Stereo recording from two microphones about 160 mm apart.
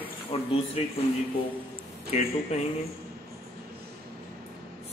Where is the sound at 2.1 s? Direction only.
40° left (ahead or behind).